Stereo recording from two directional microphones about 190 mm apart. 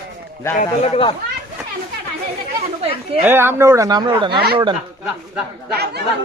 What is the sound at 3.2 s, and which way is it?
Speech, 10° right (ahead or behind).